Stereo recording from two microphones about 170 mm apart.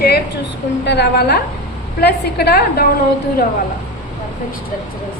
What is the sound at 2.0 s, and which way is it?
Speech, 70° left (ahead or behind).